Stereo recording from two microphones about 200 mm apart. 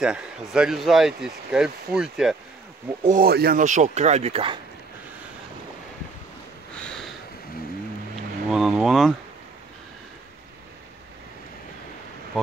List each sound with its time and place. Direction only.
0.0 s speech: 5° right (ahead or behind)
3.1 s speech: 45° right (ahead or behind); by 4.6 s 30° right (ahead or behind)
6.8 s a sound: 5° left (ahead or behind)
8.5 s speech: centre (ahead or behind)